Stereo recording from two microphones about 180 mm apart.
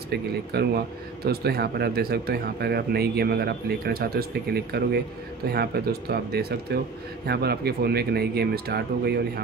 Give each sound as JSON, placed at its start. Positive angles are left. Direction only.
{"t": 0.1, "sound": "speech", "side_deg": -65}